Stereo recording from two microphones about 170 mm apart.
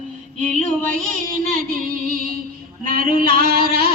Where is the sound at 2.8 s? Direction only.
55° right (ahead or behind).